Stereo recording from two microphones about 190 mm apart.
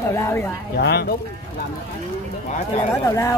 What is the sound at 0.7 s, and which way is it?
Speech, 60° left (ahead or behind).